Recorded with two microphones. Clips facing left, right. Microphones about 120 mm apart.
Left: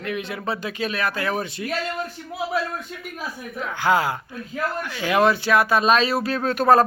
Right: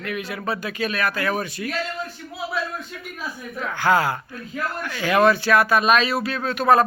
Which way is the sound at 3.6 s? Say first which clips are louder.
Right 1 dB; 15° left (ahead or behind).